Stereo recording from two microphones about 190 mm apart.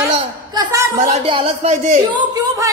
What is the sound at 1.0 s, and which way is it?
A woman's voice, 35° right (ahead or behind).